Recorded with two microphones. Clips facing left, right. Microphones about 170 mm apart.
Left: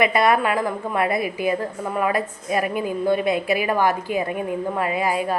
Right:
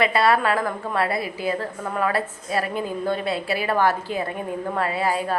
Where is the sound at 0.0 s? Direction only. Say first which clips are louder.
Left 1 dB; 20° left (ahead or behind).